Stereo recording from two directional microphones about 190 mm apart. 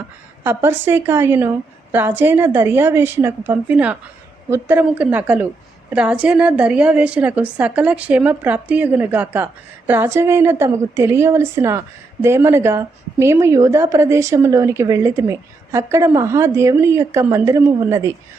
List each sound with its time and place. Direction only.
0.4 s a woman's voice: 10° right (ahead or behind)